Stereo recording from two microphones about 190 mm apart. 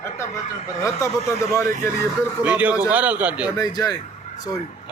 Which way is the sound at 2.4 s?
10° right (ahead or behind).